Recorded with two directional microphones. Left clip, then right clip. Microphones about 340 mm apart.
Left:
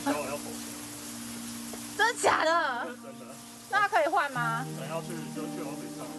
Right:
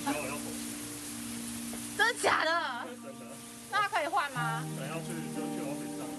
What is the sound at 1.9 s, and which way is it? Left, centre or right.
Speech, centre.